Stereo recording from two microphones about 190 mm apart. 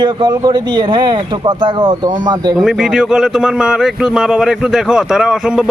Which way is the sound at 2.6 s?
Centre (ahead or behind).